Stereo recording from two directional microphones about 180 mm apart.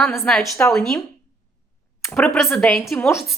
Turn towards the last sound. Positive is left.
turn(degrees=10)  # may be behind; listen again after turning